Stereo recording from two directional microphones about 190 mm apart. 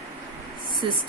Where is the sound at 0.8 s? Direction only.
25° right (ahead or behind).